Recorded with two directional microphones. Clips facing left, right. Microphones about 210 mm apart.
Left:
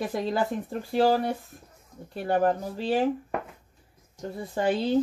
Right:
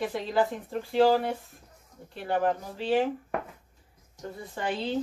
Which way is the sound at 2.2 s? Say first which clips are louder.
Left 3 dB; 40° left (ahead or behind).